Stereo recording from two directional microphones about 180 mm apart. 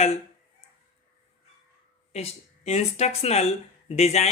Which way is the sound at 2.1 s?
35° left (ahead or behind).